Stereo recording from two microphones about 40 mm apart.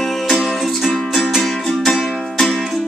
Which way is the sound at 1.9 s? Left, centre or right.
Centre.